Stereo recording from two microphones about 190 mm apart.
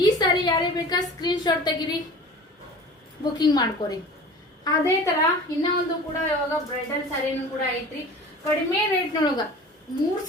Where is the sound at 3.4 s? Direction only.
20° left (ahead or behind).